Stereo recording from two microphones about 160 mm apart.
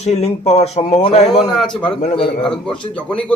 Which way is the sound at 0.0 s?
40° left (ahead or behind).